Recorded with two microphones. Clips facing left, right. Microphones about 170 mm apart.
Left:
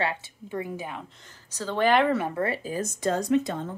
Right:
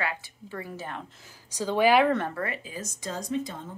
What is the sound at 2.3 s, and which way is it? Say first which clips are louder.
Speech: left 5 dB; 30° left (ahead or behind).